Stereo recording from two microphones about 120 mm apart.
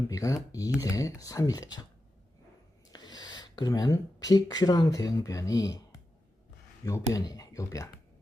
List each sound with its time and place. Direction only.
0.1 s speech: 25° left (ahead or behind)
2.9 s speech: 35° left (ahead or behind)
6.8 s speech: 30° left (ahead or behind)